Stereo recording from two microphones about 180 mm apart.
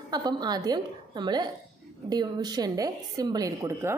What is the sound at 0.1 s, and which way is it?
A woman's voice, 25° right (ahead or behind).